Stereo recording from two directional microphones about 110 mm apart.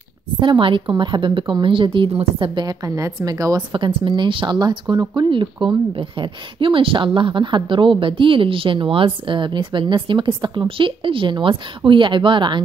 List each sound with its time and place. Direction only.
0.4 s speech: 50° right (ahead or behind)
2.4 s a woman's voice: 40° right (ahead or behind)
3.7 s speech: 50° right (ahead or behind)